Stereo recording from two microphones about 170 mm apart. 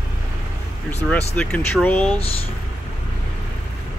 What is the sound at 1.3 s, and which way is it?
Speech, 10° left (ahead or behind).